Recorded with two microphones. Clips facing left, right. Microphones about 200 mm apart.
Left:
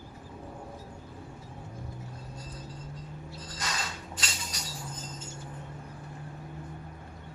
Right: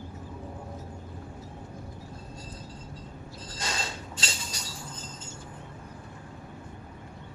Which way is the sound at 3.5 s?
30° right (ahead or behind).